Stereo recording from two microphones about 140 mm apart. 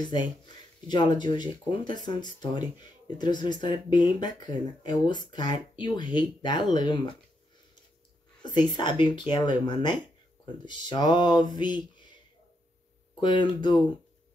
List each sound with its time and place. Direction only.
0.8 s speech: 30° left (ahead or behind)
8.4 s speech: 30° left (ahead or behind)
13.2 s speech: 35° left (ahead or behind)